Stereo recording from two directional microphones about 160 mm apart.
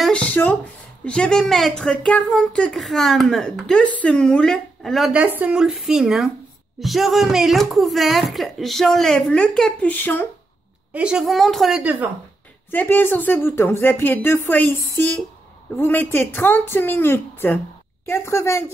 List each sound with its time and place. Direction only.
0.0 s a sound: 10° left (ahead or behind)
1.0 s speech: 5° left (ahead or behind)
10.9 s speech: 5° right (ahead or behind)
12.7 s speech: 10° left (ahead or behind)